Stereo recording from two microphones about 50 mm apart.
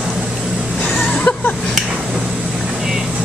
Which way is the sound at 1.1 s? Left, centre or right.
Left.